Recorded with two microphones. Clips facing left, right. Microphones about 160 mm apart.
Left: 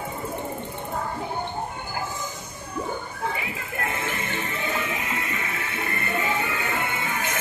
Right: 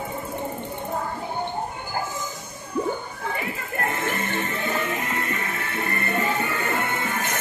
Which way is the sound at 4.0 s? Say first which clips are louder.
Right 3 dB; 45° right (ahead or behind).